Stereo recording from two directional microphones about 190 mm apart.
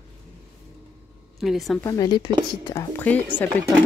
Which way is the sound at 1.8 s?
20° left (ahead or behind).